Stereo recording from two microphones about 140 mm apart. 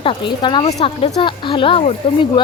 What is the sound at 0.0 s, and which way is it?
Speech, 35° left (ahead or behind).